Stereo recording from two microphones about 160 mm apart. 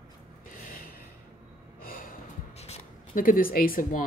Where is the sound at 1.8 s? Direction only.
65° left (ahead or behind).